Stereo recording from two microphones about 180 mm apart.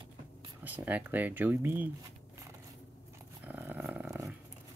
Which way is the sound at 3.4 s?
10° right (ahead or behind).